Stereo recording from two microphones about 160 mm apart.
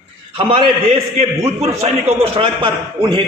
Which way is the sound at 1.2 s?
40° right (ahead or behind).